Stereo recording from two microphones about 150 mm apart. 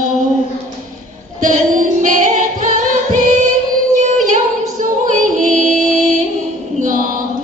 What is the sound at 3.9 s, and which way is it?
Female singing, 55° right (ahead or behind).